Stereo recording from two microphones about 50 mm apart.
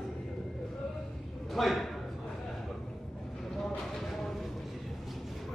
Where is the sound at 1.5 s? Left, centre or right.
Centre.